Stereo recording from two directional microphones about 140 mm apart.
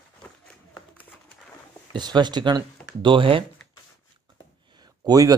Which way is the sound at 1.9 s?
30° right (ahead or behind).